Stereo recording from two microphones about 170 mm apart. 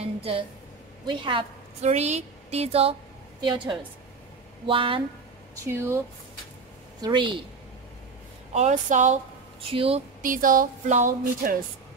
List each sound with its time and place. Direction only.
0.0 s a sound: 35° right (ahead or behind)
1.0 s a woman's voice: 30° right (ahead or behind)
5.7 s speech: 15° right (ahead or behind)
7.0 s a woman's voice: 25° right (ahead or behind)
8.5 s speech: 45° right (ahead or behind)
9.6 s speech: 35° right (ahead or behind)
10.2 s speech: 55° right (ahead or behind)